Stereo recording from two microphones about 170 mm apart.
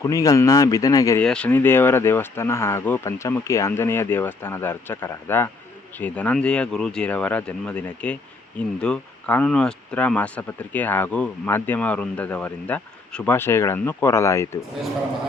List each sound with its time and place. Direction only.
0.0 s speech: 20° left (ahead or behind)
1.2 s speech: 5° left (ahead or behind)